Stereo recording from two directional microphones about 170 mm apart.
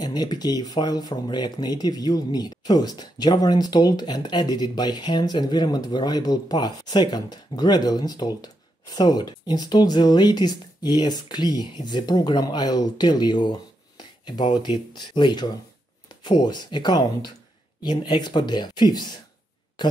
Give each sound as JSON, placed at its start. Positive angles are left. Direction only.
{"t": 0.0, "sound": "speech", "side_deg": 25}